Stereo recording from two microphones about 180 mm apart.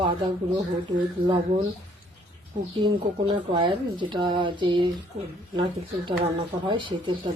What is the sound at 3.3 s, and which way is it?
A woman's voice, 25° right (ahead or behind).